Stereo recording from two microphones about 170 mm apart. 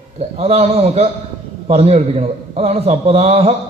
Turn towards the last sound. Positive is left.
turn(degrees=-40)  # may be behind; listen again after turning